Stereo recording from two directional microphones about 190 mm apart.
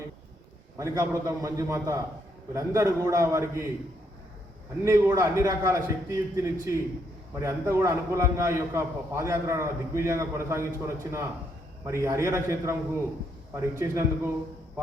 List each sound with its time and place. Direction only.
0.8 s a man's voice: 15° right (ahead or behind)
4.8 s a man's voice: 15° right (ahead or behind)